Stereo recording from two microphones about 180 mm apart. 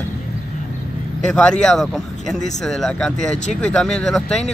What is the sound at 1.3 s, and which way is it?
Speech, centre (ahead or behind).